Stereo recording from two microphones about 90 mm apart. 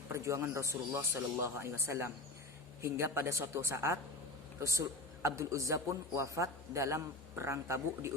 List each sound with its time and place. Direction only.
0.1 s a man's voice: 30° right (ahead or behind)